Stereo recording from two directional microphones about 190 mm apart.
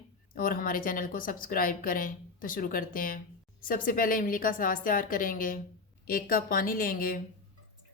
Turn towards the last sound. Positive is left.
turn(degrees=50)  # may be behind; listen again after turning